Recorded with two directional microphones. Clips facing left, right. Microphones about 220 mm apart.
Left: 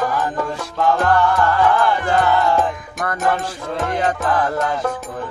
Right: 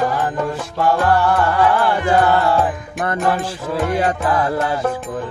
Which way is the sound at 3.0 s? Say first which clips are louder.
Right 2 dB; 30° right (ahead or behind).